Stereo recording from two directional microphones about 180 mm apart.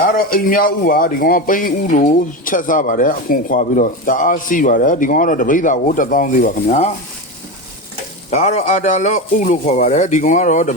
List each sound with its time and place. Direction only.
0.0 s speech: 50° left (ahead or behind)
8.3 s a man's voice: 35° left (ahead or behind)